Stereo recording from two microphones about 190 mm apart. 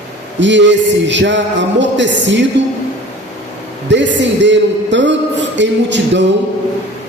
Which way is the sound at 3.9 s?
70° right (ahead or behind).